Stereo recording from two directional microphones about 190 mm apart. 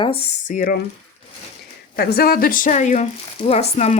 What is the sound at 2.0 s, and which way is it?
A woman's voice, 55° left (ahead or behind).